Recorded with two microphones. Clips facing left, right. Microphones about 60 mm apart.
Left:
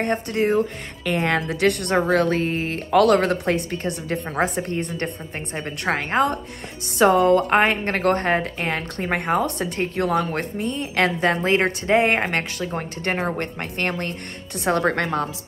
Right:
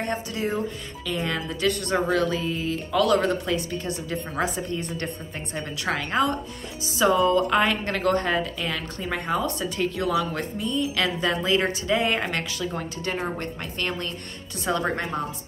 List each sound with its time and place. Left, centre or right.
0.0 s a woman's voice: left
7.0 s a woman's voice: left